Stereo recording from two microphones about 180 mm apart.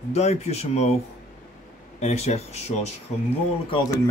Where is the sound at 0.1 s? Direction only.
35° left (ahead or behind).